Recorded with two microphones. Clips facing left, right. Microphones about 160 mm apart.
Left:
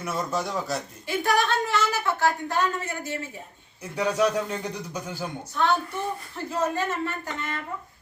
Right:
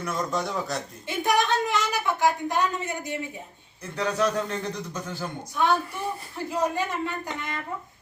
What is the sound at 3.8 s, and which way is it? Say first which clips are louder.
A man's voice: left 2 dB; 10° left (ahead or behind).